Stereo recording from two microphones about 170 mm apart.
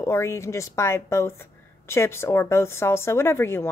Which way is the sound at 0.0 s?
15° left (ahead or behind).